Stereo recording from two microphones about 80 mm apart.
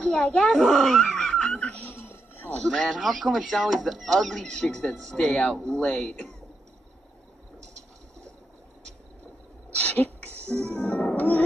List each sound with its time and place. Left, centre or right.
0.0 s a child's voice: centre
0.5 s laughter: centre
1.9 s music: left
2.6 s speech: centre
9.8 s music: left